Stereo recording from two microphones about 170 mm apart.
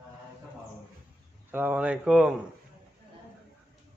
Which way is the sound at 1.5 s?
10° right (ahead or behind).